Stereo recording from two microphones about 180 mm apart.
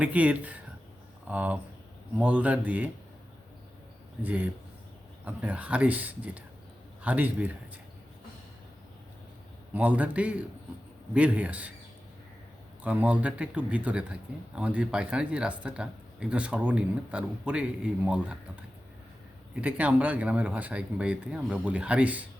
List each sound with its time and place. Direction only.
0.0 s speech: 10° right (ahead or behind)
4.2 s speech: 10° right (ahead or behind)
9.7 s speech: 10° right (ahead or behind)
12.8 s speech: 10° right (ahead or behind)
19.6 s speech: 10° right (ahead or behind)